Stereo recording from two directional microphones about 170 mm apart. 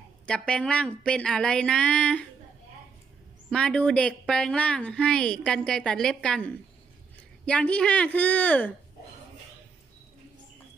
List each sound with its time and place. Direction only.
0.3 s a woman's voice: 5° left (ahead or behind)
3.4 s a woman's voice: 5° left (ahead or behind)